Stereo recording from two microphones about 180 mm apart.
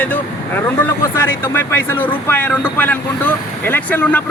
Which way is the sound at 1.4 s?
10° left (ahead or behind).